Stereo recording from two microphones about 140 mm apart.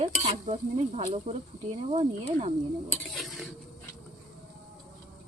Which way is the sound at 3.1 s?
Centre (ahead or behind).